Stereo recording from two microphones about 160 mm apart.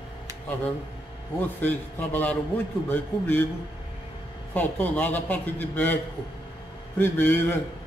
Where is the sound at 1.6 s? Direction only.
10° left (ahead or behind).